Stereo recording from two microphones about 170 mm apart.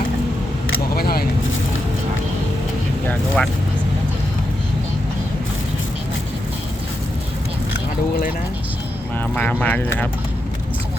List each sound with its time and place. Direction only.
0.9 s vehicle: 65° left (ahead or behind)
3.1 s speech: 5° left (ahead or behind)
9.3 s speech: 5° left (ahead or behind)